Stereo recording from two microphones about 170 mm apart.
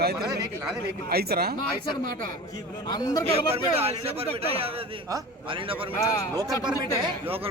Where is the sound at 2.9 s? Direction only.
25° left (ahead or behind).